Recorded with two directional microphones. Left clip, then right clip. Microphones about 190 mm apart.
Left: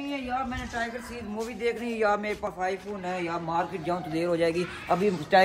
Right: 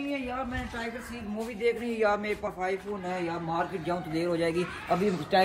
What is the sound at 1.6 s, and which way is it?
A man's voice, centre (ahead or behind).